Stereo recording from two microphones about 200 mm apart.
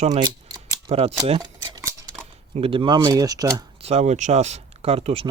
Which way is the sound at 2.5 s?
25° right (ahead or behind).